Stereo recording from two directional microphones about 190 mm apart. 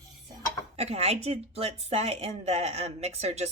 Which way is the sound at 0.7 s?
35° right (ahead or behind).